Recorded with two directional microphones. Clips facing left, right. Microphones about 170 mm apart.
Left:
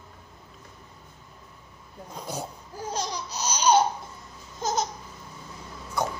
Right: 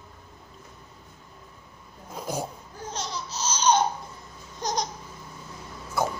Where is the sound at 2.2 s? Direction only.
10° right (ahead or behind).